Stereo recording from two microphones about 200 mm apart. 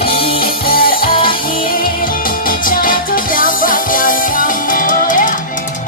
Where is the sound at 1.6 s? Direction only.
45° left (ahead or behind).